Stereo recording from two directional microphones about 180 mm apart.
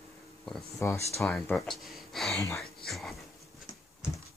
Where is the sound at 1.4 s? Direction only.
5° left (ahead or behind).